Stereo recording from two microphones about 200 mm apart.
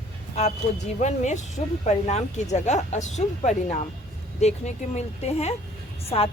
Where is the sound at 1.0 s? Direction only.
35° left (ahead or behind).